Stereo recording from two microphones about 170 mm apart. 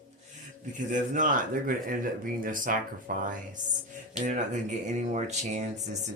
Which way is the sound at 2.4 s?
55° right (ahead or behind).